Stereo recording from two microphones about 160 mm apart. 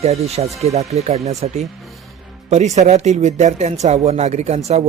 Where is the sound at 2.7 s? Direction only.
45° right (ahead or behind).